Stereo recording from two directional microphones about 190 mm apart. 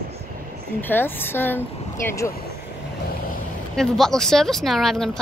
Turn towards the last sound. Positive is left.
turn(degrees=0)  # may be behind; listen again after turning